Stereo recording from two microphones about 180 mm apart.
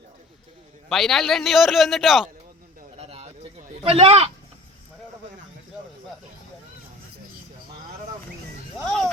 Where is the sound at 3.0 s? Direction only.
35° right (ahead or behind).